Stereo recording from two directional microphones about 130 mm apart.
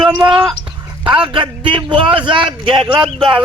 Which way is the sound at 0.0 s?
5° right (ahead or behind).